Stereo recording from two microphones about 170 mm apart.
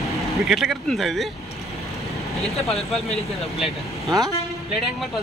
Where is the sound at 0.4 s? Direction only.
Centre (ahead or behind).